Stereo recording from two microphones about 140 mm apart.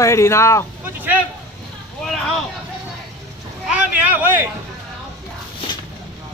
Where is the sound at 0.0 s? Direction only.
20° left (ahead or behind).